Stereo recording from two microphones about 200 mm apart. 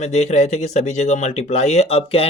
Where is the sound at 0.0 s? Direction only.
35° left (ahead or behind).